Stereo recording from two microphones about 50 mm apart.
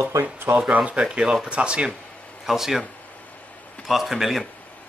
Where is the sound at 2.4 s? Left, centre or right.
Centre.